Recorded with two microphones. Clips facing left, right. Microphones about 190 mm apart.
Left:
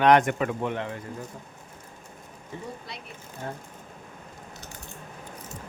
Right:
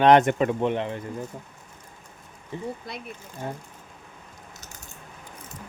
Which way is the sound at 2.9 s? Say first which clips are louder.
Right 4 dB; 50° right (ahead or behind).